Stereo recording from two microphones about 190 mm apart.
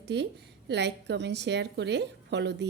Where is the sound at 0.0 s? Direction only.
60° right (ahead or behind).